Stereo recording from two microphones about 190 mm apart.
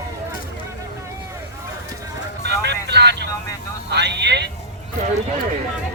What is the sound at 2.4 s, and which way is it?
Vehicle, 60° right (ahead or behind).